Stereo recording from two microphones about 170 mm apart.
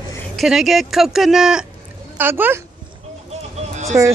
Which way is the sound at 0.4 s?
Centre (ahead or behind).